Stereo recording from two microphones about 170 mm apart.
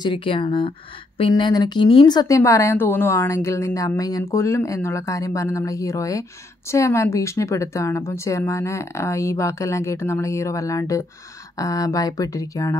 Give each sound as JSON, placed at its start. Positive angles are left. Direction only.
{"t": 0.0, "sound": "a woman's voice", "side_deg": 30}